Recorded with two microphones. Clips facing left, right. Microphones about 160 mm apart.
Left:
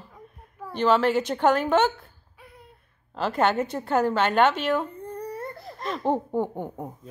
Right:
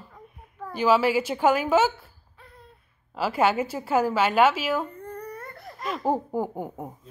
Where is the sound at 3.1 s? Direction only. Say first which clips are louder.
Even; 5° right (ahead or behind).